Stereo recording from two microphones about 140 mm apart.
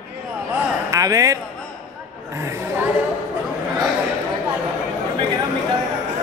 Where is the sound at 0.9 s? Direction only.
25° right (ahead or behind).